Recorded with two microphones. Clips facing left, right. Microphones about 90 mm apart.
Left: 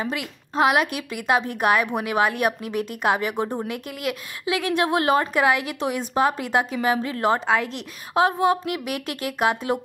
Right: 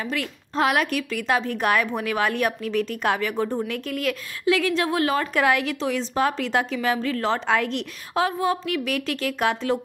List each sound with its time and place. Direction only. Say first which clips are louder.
0.0 s a woman's voice: even; 20° left (ahead or behind)
5.3 s a woman's voice: even; 10° left (ahead or behind)
7.3 s a woman's voice: even; 5° left (ahead or behind)
8.1 s a woman's voice: left 4 dB; 20° left (ahead or behind)